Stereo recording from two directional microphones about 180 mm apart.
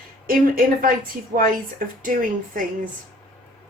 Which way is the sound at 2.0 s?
50° right (ahead or behind).